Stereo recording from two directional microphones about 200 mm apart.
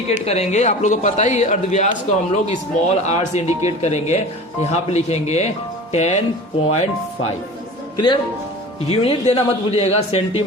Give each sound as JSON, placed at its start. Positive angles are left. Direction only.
{"t": 0.1, "sound": "speech", "side_deg": 30}
{"t": 7.9, "sound": "speech", "side_deg": 20}